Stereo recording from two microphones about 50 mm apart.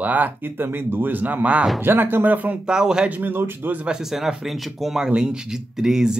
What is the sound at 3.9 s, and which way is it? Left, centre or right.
Speech, centre.